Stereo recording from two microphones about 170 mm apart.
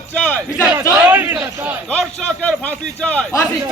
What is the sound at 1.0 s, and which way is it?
Speech, 10° right (ahead or behind).